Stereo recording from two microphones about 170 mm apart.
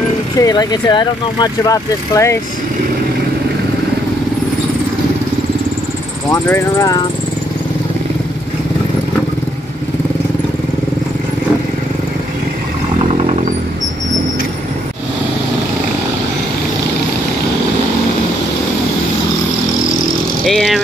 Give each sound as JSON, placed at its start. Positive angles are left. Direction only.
{"t": 0.4, "sound": "speech", "side_deg": 20}
{"t": 6.3, "sound": "speech", "side_deg": 20}
{"t": 20.4, "sound": "vehicle", "side_deg": 0}